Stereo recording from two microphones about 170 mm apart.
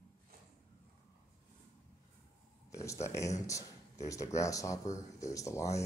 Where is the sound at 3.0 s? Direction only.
15° left (ahead or behind).